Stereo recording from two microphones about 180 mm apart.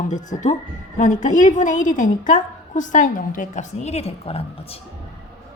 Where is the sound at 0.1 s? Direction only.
45° left (ahead or behind).